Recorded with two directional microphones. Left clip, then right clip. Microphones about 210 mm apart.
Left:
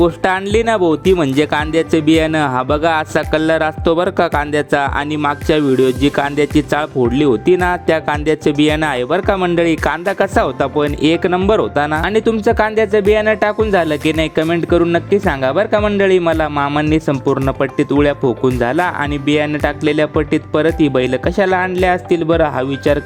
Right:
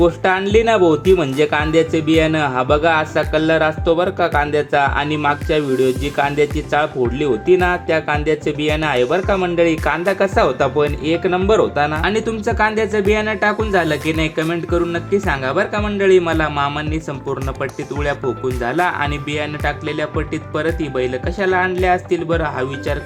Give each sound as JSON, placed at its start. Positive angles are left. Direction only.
{"t": 0.0, "sound": "speech", "side_deg": 55}